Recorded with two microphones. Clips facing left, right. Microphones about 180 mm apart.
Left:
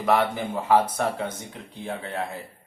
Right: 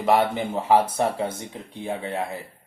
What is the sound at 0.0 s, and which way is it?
Speech, 25° right (ahead or behind).